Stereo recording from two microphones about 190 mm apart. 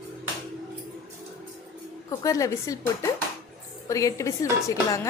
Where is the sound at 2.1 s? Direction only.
15° left (ahead or behind).